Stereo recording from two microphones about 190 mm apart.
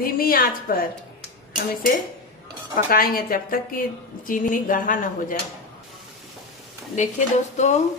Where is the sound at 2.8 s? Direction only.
50° left (ahead or behind).